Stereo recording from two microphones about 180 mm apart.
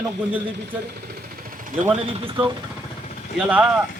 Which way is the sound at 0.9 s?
55° right (ahead or behind).